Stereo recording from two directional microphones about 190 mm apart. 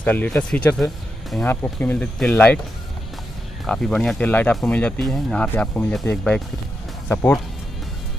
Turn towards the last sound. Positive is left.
turn(degrees=10)  # may be behind; listen again after turning